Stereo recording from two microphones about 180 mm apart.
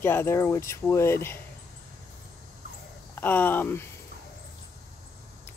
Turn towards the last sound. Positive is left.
turn(degrees=10)  # may be behind; listen again after turning